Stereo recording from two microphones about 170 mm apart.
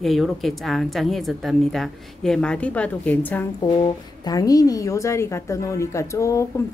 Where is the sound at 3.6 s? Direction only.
25° left (ahead or behind).